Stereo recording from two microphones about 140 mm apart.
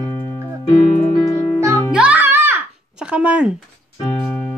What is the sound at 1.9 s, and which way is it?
Music, 5° right (ahead or behind).